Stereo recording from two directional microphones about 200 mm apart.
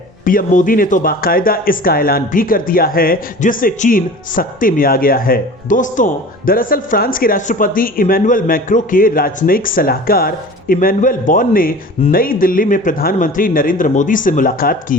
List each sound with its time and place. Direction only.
0.3 s speech: 45° left (ahead or behind)